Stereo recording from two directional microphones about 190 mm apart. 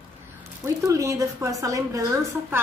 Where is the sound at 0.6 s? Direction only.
15° right (ahead or behind).